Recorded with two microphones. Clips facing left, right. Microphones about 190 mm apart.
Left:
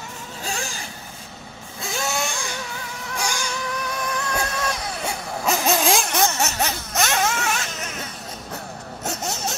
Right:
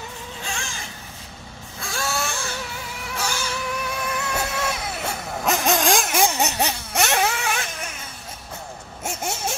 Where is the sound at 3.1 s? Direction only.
15° left (ahead or behind).